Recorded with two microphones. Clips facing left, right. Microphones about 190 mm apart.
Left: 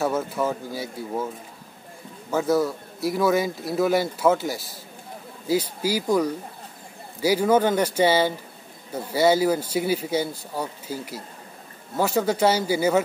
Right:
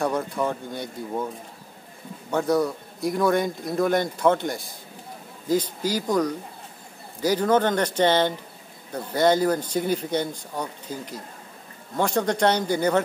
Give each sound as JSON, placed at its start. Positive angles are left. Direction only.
{"t": 0.0, "sound": "a man's voice", "side_deg": 5}
{"t": 2.3, "sound": "a man's voice", "side_deg": 0}